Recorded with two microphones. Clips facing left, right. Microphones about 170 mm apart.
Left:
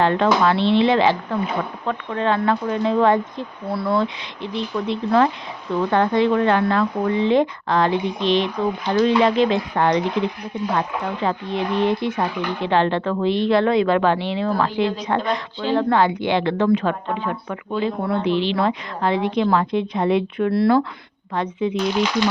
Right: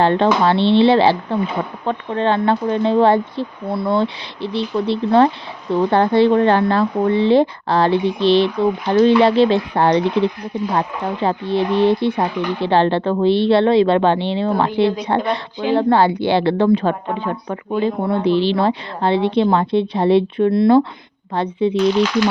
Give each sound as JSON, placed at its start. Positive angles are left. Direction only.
{"t": 0.0, "sound": "a woman's voice", "side_deg": -30}
{"t": 20.5, "sound": "speech", "side_deg": -20}
{"t": 21.3, "sound": "a woman's voice", "side_deg": -30}